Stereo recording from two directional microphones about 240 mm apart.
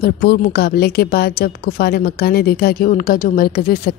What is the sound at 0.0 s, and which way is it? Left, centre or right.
Speech, left.